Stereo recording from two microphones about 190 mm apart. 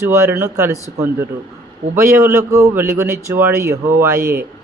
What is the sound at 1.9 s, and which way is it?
A man's voice, 15° right (ahead or behind).